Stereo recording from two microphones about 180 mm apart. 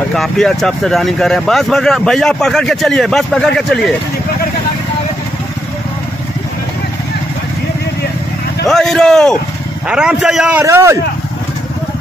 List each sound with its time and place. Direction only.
0.1 s speech: centre (ahead or behind)
8.6 s speech: centre (ahead or behind)
10.6 s speech: 15° right (ahead or behind)